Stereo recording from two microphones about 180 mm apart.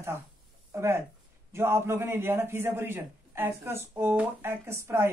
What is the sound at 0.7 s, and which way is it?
A man's voice, 15° right (ahead or behind).